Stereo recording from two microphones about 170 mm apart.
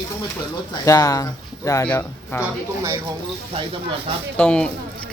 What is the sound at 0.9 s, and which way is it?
Speech, 20° left (ahead or behind).